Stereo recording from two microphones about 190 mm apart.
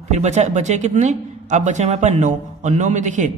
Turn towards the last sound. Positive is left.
turn(degrees=-40)  # may be behind; listen again after turning